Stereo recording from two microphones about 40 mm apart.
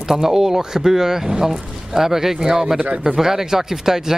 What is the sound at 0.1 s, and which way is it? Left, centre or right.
Speech, centre.